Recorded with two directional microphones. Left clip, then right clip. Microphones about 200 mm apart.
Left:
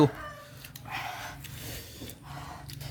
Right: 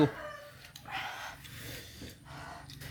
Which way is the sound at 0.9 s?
20° left (ahead or behind).